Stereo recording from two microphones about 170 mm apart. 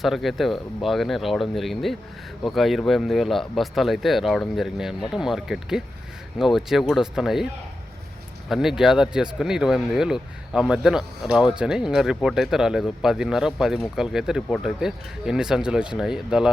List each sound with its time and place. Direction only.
0.0 s speech: centre (ahead or behind)
8.4 s speech: centre (ahead or behind)